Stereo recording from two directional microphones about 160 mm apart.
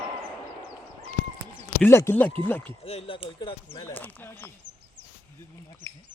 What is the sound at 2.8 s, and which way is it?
Speech, 40° left (ahead or behind).